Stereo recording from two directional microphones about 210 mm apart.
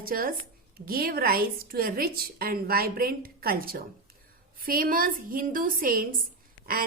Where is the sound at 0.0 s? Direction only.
45° right (ahead or behind).